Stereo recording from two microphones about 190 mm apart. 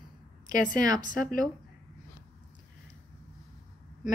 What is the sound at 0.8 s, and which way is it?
Speech, 20° right (ahead or behind).